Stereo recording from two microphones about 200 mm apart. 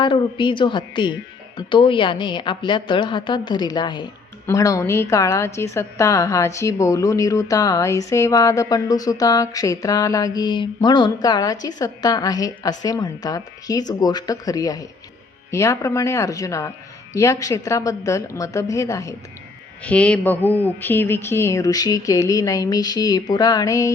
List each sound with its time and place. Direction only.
0.0 s a woman's voice: 25° left (ahead or behind)